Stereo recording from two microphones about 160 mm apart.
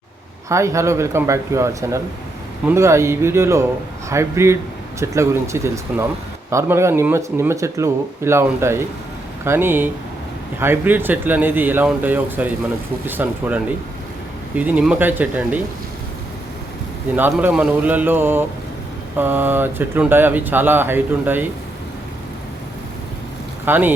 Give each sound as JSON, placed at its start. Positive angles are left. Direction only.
{"t": 0.4, "sound": "speech", "side_deg": -20}
{"t": 17.2, "sound": "speech", "side_deg": -10}
{"t": 23.6, "sound": "speech", "side_deg": -10}